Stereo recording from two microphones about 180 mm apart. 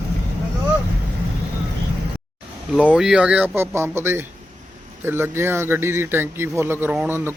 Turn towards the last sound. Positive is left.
turn(degrees=-10)  # may be behind; listen again after turning